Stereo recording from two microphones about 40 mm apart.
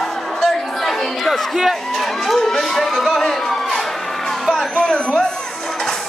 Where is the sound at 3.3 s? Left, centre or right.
Centre.